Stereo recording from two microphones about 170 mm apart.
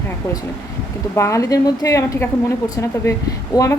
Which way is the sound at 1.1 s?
15° left (ahead or behind).